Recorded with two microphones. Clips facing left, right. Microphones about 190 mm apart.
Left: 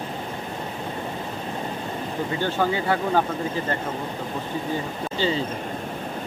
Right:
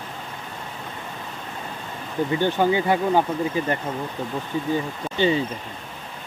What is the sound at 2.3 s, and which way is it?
Speech, 20° right (ahead or behind).